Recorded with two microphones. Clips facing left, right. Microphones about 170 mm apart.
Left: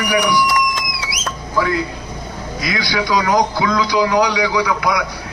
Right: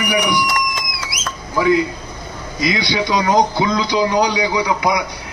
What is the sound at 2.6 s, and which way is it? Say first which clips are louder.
A man's voice: right 2 dB; 20° right (ahead or behind).